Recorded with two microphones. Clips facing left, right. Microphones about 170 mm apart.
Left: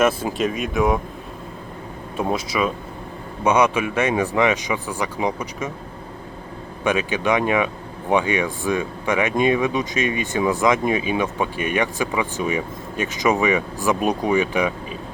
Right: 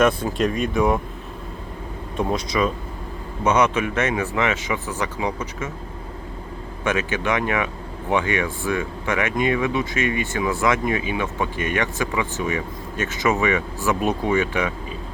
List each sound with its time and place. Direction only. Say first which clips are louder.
0.0 s speech: even; 5° left (ahead or behind)
2.1 s speech: even; 5° left (ahead or behind)
6.8 s speech: left 2 dB; 15° left (ahead or behind)